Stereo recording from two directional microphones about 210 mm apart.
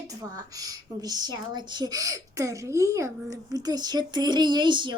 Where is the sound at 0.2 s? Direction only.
15° right (ahead or behind).